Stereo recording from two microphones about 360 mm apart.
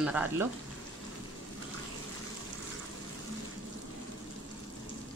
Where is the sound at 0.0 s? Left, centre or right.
Centre.